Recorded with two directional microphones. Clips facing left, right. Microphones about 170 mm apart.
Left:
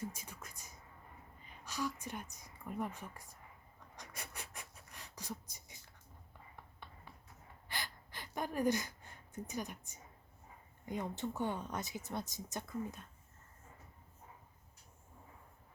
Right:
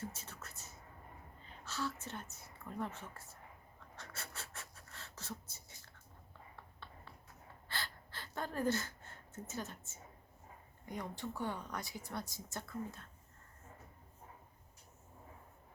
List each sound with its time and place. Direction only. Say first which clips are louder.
0.0 s a sound: left 2 dB; 10° left (ahead or behind)
1.4 s a woman's voice: left 1 dB; 15° left (ahead or behind)
3.9 s pant: even; 15° left (ahead or behind)
7.7 s gasp: even; 15° left (ahead or behind)
10.8 s speech: left 4 dB; 20° left (ahead or behind)